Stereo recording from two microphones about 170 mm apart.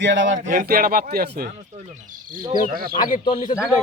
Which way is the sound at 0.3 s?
50° right (ahead or behind).